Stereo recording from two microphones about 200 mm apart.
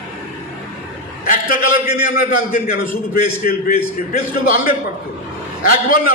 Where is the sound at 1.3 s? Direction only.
45° left (ahead or behind).